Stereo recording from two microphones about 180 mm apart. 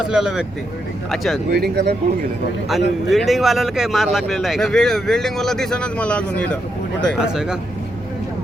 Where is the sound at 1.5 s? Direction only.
65° right (ahead or behind).